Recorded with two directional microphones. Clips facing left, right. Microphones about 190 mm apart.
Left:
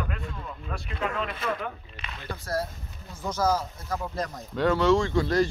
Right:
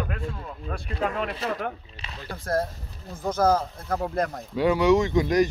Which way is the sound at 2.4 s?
50° right (ahead or behind).